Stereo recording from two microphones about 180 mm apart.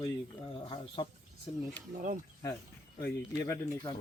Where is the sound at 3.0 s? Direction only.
15° left (ahead or behind).